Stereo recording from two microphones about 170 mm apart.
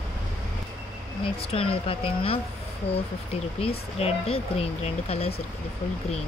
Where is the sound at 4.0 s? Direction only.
35° left (ahead or behind).